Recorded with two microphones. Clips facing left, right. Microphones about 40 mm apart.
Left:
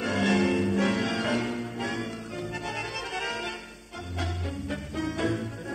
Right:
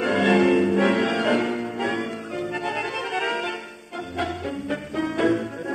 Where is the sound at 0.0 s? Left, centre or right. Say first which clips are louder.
Right 6 dB; right.